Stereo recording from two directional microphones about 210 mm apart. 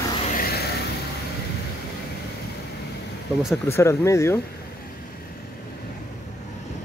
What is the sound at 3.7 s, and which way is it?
Speech, 15° left (ahead or behind).